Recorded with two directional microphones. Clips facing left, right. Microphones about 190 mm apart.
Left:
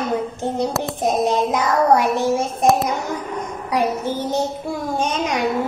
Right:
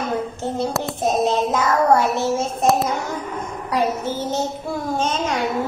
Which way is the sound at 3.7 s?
15° left (ahead or behind).